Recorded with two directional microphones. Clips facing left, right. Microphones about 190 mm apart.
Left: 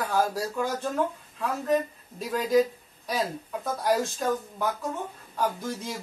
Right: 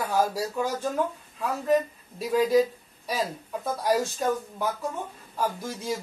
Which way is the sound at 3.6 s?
Centre (ahead or behind).